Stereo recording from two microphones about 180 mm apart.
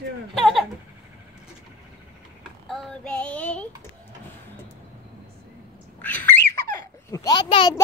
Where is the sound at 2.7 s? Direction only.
5° left (ahead or behind).